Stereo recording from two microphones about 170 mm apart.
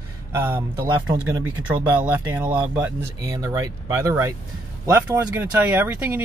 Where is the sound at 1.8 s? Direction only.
10° right (ahead or behind).